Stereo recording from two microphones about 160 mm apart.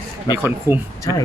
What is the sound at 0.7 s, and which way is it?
Speech, 15° right (ahead or behind).